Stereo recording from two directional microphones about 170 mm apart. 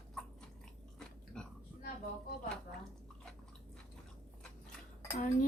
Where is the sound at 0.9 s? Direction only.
5° left (ahead or behind).